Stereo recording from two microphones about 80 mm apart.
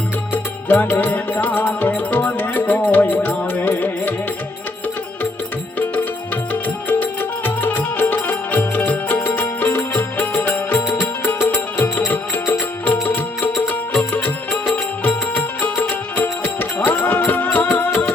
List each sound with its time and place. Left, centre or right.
0.7 s music: left
5.9 s music: left